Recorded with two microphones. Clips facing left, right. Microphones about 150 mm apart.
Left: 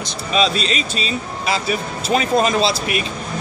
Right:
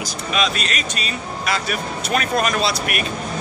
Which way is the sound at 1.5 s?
25° left (ahead or behind).